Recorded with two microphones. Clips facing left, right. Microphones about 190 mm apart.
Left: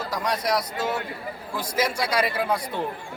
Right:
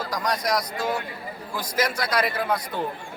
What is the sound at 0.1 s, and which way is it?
A man's voice, 5° left (ahead or behind).